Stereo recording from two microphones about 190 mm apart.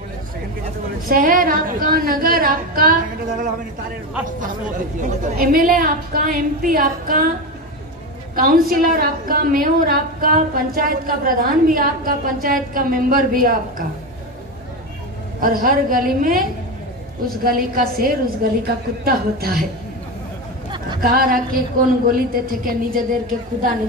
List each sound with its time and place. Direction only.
1.0 s a woman's voice: 45° right (ahead or behind)
5.0 s a woman's voice: 50° right (ahead or behind)
8.4 s a woman's voice: 50° right (ahead or behind)
15.4 s a woman's voice: 50° right (ahead or behind)
21.0 s a woman's voice: 50° right (ahead or behind)